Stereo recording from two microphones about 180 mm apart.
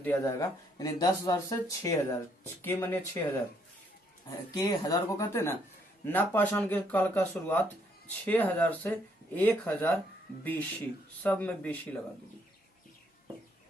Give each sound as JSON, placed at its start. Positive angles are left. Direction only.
{"t": 0.0, "sound": "speech", "side_deg": 10}
{"t": 0.8, "sound": "speech", "side_deg": 25}
{"t": 4.5, "sound": "speech", "side_deg": 20}